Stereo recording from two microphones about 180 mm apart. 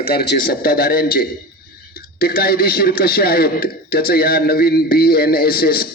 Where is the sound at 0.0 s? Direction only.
60° left (ahead or behind).